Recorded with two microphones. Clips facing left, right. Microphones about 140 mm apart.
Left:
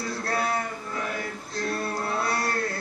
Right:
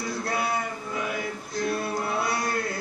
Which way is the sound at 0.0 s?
15° right (ahead or behind).